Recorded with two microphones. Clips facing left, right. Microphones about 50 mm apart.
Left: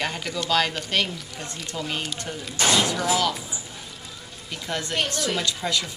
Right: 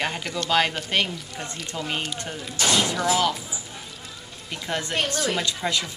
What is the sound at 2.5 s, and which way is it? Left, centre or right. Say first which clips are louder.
Speech: left 1 dB; left.